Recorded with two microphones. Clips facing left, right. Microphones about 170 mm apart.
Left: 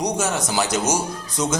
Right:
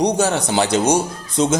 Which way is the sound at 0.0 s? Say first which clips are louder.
Right 5 dB; 30° right (ahead or behind).